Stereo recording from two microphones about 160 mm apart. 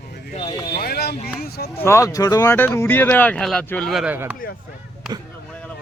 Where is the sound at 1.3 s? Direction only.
75° left (ahead or behind).